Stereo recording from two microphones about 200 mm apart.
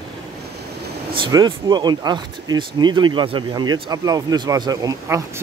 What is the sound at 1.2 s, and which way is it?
Speech, 20° right (ahead or behind).